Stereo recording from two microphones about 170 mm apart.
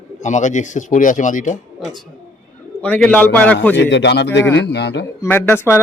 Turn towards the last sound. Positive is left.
turn(degrees=15)  # may be behind; listen again after turning